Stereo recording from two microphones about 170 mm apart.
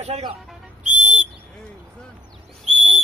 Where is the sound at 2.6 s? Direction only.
40° right (ahead or behind).